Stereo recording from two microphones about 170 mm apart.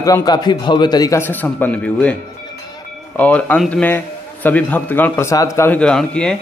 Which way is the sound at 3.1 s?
10° left (ahead or behind).